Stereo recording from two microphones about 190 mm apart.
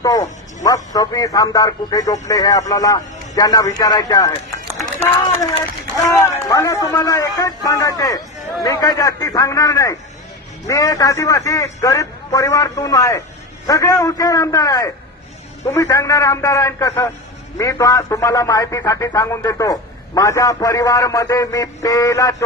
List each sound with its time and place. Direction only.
0.0 s a man's voice: 20° left (ahead or behind)
6.1 s a man's voice: 15° left (ahead or behind)